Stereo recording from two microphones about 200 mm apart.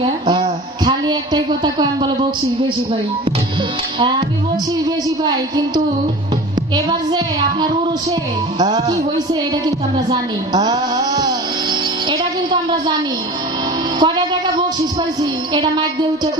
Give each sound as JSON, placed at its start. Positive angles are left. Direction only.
{"t": 0.0, "sound": "a sound", "side_deg": -25}
{"t": 5.2, "sound": "a woman's voice", "side_deg": -20}
{"t": 6.7, "sound": "a woman's voice", "side_deg": -20}
{"t": 12.1, "sound": "a sound", "side_deg": -20}
{"t": 13.9, "sound": "music", "side_deg": -20}
{"t": 15.5, "sound": "a woman's voice", "side_deg": -20}